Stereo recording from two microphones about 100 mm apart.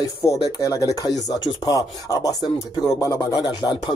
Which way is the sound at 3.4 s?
45° left (ahead or behind).